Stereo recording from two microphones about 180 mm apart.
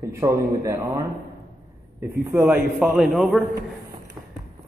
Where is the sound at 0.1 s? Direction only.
15° right (ahead or behind); by 3.4 s centre (ahead or behind).